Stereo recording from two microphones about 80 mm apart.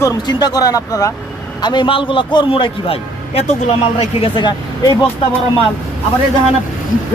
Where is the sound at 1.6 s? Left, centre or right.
Left.